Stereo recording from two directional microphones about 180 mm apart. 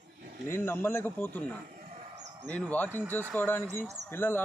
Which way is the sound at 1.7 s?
45° right (ahead or behind).